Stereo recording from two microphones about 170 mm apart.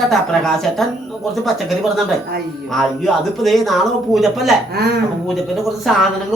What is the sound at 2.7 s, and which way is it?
Speech, centre (ahead or behind).